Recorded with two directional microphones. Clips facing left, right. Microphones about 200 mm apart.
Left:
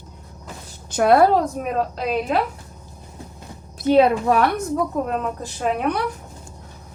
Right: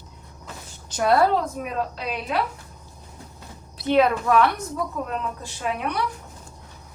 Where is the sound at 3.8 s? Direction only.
35° left (ahead or behind).